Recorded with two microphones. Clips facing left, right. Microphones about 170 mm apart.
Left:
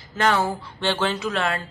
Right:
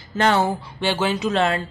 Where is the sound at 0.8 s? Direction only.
10° right (ahead or behind).